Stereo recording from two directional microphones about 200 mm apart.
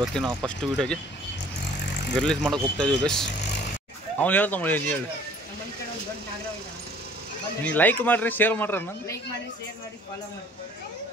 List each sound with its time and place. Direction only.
0.0 s speech: centre (ahead or behind)
2.1 s speech: 5° left (ahead or behind)
3.3 s vehicle: 60° left (ahead or behind)
4.2 s speech: 10° left (ahead or behind)
7.6 s speech: 10° left (ahead or behind)